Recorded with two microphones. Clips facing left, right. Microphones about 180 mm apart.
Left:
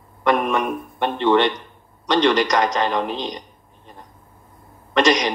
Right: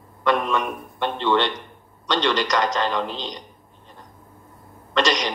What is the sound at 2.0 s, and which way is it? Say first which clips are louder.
Speech: left 5 dB; 15° left (ahead or behind).